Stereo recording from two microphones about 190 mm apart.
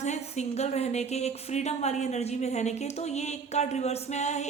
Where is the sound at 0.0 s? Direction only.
35° left (ahead or behind).